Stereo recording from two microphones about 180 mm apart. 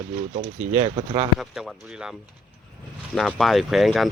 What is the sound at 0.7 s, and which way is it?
Speech, 30° right (ahead or behind).